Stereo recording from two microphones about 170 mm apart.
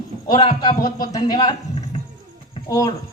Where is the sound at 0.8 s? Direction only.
20° left (ahead or behind).